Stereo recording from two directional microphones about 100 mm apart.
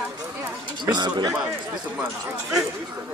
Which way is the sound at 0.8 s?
45° right (ahead or behind).